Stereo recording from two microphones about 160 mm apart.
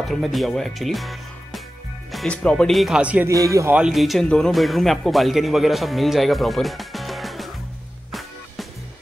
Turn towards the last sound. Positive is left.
turn(degrees=0)  # may be behind; listen again after turning